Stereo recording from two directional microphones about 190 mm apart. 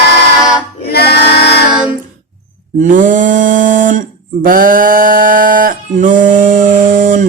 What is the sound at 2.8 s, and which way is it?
Speech, 45° right (ahead or behind).